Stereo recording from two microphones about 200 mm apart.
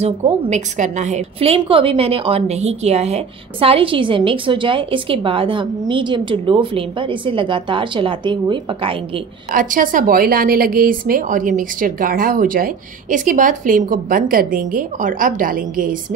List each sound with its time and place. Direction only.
0.0 s a woman's voice: 35° right (ahead or behind)
9.5 s a woman's voice: 45° right (ahead or behind)